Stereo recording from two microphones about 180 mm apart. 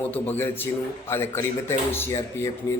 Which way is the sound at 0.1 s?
10° left (ahead or behind).